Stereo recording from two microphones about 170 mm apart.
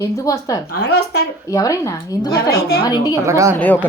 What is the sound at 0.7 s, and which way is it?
Speech, 70° left (ahead or behind).